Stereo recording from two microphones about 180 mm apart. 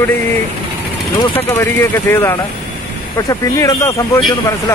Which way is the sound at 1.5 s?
15° left (ahead or behind).